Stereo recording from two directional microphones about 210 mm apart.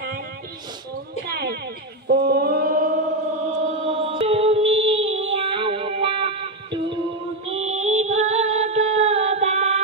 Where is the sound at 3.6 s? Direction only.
30° right (ahead or behind).